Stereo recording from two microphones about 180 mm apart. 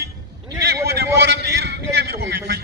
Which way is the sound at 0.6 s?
65° right (ahead or behind).